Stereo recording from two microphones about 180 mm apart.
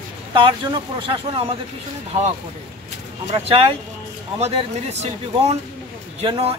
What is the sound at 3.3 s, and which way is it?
Speech, 35° right (ahead or behind).